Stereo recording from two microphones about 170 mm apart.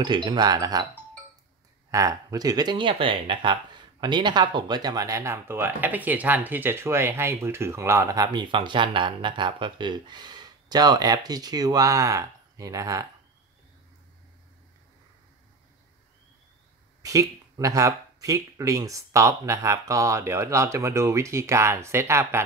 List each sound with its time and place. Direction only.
0.0 s speech: 25° right (ahead or behind)
1.9 s speech: 20° right (ahead or behind)
17.0 s speech: 20° right (ahead or behind)